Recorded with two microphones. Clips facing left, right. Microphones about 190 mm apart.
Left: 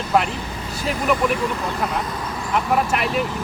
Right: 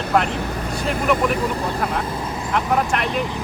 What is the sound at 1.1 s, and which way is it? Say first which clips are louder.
Speech: right 1 dB; 40° right (ahead or behind).